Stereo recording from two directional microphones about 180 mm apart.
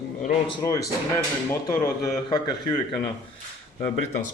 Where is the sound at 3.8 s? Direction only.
40° left (ahead or behind).